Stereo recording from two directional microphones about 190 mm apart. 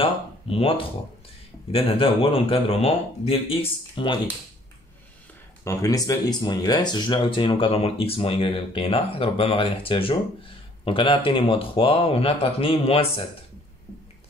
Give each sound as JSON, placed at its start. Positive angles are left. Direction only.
{"t": 0.0, "sound": "a sound", "side_deg": 30}
{"t": 1.7, "sound": "speech", "side_deg": 30}
{"t": 5.6, "sound": "speech", "side_deg": 15}